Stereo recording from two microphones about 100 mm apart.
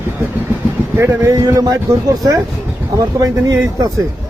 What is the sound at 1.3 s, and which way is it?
A man's voice, 35° right (ahead or behind).